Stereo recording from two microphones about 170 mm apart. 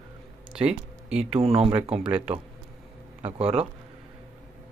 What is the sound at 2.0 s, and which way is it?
Speech, 10° right (ahead or behind).